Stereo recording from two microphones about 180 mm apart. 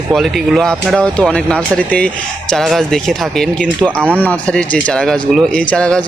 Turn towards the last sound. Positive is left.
turn(degrees=5)  # may be behind; listen again after turning